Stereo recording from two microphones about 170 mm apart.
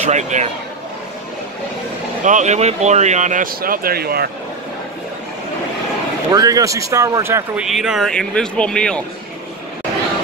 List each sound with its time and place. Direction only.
0.0 s speech: 45° right (ahead or behind)
2.2 s speech: 45° right (ahead or behind); by 4.3 s 65° right (ahead or behind)
6.3 s speech: 20° right (ahead or behind)
7.6 s speech: 5° right (ahead or behind)